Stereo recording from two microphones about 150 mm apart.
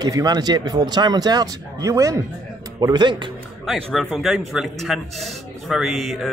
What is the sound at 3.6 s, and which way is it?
Speech, centre (ahead or behind).